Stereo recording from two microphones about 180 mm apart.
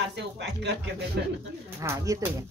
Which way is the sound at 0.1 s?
70° right (ahead or behind).